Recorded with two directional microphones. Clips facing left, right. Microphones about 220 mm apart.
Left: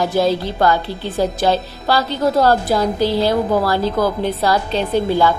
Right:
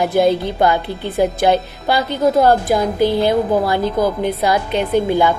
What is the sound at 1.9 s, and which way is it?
Speech, 15° right (ahead or behind).